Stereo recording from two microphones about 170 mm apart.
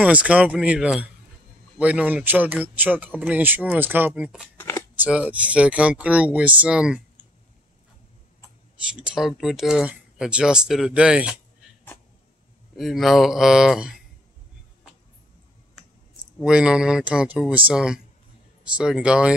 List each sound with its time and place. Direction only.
0.0 s speech: 5° right (ahead or behind)
4.6 s shuffling cards: 15° left (ahead or behind)
4.9 s speech: 10° right (ahead or behind)
8.9 s speech: 5° right (ahead or behind)
12.7 s speech: centre (ahead or behind)
16.3 s speech: 5° right (ahead or behind)